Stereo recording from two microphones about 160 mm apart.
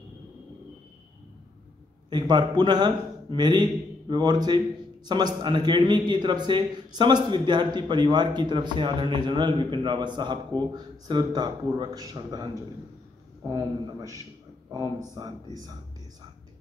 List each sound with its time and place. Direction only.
2.0 s a man's voice: 30° right (ahead or behind)